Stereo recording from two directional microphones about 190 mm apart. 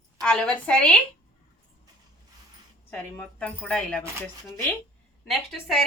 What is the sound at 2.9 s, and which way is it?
A woman's voice, 10° left (ahead or behind).